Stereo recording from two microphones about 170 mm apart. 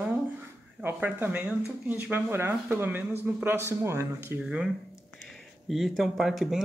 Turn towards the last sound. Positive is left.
turn(degrees=0)  # may be behind; listen again after turning